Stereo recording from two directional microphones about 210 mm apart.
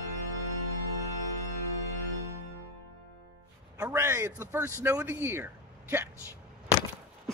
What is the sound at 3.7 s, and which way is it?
A man's voice, 10° right (ahead or behind).